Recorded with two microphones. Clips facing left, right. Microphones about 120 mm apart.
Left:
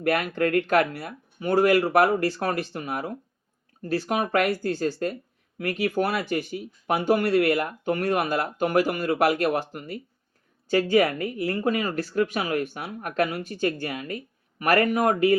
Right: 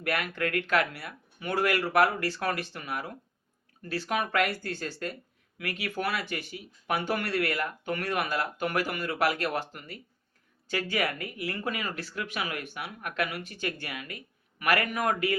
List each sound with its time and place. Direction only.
0.0 s speech: 45° left (ahead or behind)